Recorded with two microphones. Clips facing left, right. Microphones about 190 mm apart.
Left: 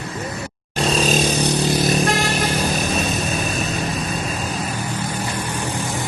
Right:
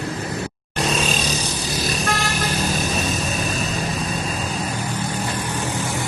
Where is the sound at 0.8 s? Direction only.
30° left (ahead or behind); by 1.9 s 60° left (ahead or behind).